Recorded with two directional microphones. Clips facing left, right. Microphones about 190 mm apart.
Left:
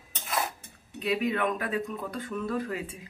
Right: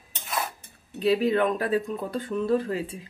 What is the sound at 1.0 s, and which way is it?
Speech, 30° right (ahead or behind).